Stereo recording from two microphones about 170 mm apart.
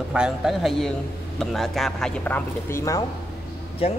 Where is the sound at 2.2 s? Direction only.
15° left (ahead or behind).